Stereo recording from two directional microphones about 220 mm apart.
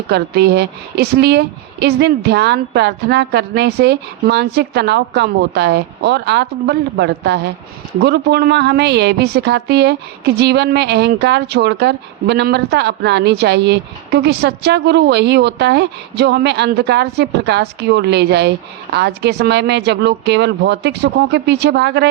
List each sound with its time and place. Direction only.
0.1 s a woman's voice: 50° right (ahead or behind)